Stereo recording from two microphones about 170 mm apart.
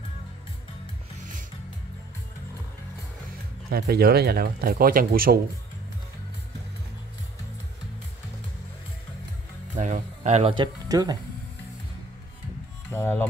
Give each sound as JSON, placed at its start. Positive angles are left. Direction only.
{"t": 3.7, "sound": "speech", "side_deg": -65}
{"t": 9.8, "sound": "speech", "side_deg": -45}
{"t": 12.9, "sound": "speech", "side_deg": 10}